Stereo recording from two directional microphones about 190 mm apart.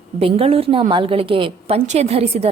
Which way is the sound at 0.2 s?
30° right (ahead or behind).